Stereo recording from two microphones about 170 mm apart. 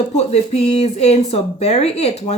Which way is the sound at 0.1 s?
40° left (ahead or behind).